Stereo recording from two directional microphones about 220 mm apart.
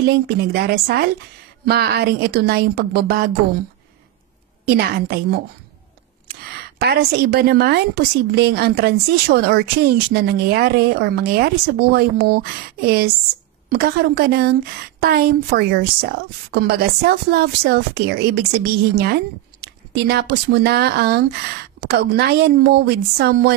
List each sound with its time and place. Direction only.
0.0 s a woman's voice: 45° right (ahead or behind)
4.6 s a woman's voice: 45° right (ahead or behind)
6.8 s a woman's voice: 45° right (ahead or behind)